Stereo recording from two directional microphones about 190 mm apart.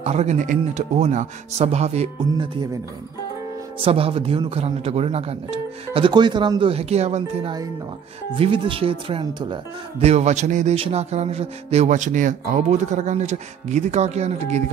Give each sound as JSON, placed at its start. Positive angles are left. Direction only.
{"t": 0.0, "sound": "speech", "side_deg": -35}
{"t": 3.8, "sound": "speech", "side_deg": -30}